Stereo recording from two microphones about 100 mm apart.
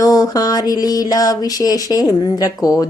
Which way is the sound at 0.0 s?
35° left (ahead or behind).